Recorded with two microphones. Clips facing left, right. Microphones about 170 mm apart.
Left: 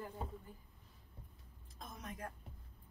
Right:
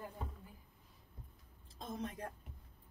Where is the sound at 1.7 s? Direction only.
30° right (ahead or behind).